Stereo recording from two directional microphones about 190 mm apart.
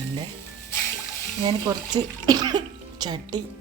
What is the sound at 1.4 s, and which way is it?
Speech, 20° right (ahead or behind).